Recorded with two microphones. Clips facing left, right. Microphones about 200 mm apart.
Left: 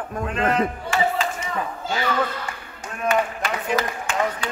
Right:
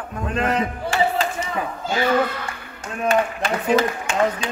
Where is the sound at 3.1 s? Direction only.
25° right (ahead or behind).